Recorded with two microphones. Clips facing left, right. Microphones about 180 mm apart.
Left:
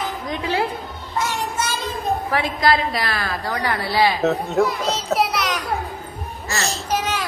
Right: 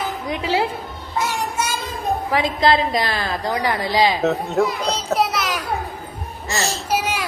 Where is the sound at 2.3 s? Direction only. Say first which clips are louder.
Right 3 dB; 20° right (ahead or behind).